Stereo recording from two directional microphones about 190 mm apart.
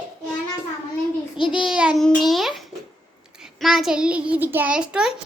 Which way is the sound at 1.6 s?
5° right (ahead or behind).